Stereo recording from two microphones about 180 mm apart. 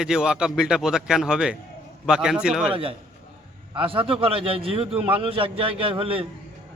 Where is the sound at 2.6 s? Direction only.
30° right (ahead or behind).